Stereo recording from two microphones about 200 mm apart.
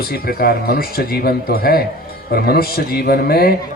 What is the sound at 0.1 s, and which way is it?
Speech, 50° left (ahead or behind).